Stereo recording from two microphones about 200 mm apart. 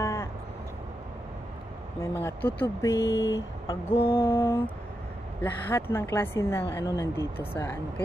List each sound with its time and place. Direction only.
0.0 s vehicle: 15° left (ahead or behind)
2.0 s a woman's voice: 10° left (ahead or behind)
3.0 s speech: 60° left (ahead or behind)
4.2 s a woman's voice: 10° left (ahead or behind)